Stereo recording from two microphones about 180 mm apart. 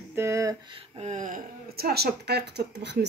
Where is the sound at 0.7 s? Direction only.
40° right (ahead or behind).